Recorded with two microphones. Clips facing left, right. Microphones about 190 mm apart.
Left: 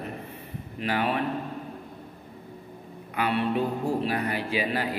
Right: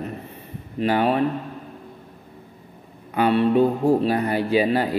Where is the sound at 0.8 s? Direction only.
35° right (ahead or behind).